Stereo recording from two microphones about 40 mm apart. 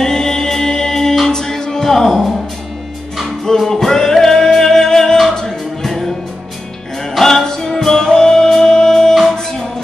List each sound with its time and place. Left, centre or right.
0.0 s music: centre
3.5 s music: centre
7.2 s music: centre